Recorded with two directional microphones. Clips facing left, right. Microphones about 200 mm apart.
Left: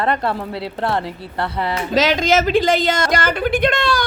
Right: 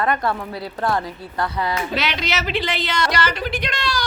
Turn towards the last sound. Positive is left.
turn(degrees=55)  # may be behind; listen again after turning